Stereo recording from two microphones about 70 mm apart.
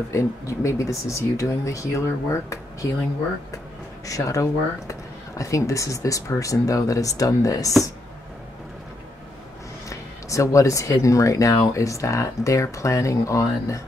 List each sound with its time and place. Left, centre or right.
0.1 s speech: left
9.8 s speech: left